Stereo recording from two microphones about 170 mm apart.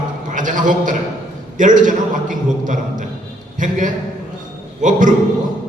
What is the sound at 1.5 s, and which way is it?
Speech, 50° right (ahead or behind).